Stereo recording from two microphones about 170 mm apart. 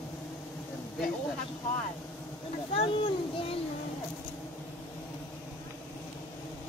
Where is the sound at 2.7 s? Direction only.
35° left (ahead or behind).